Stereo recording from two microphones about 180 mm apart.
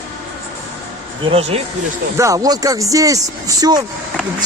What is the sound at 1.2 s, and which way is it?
Speech, 30° right (ahead or behind).